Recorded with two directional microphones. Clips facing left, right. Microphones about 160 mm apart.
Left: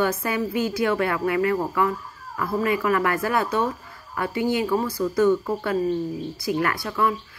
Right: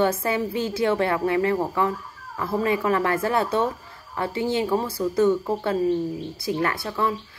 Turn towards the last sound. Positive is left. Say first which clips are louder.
# left 1 dB
turn(degrees=-25)  # may be behind; listen again after turning